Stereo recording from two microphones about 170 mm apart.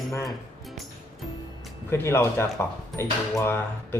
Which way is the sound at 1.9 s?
15° left (ahead or behind).